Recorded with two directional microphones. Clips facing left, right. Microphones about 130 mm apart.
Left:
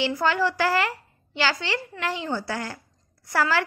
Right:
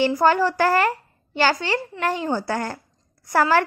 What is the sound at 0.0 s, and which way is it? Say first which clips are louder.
A woman's voice: right 5 dB; 45° right (ahead or behind).